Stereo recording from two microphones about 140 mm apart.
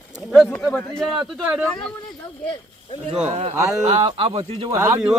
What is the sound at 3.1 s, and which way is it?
Speech, 50° right (ahead or behind).